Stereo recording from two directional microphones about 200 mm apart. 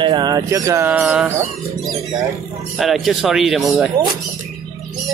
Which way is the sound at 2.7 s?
Centre (ahead or behind).